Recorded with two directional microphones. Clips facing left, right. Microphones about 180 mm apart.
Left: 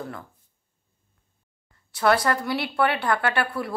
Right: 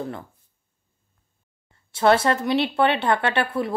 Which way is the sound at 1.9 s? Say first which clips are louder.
Right 3 dB; 25° right (ahead or behind).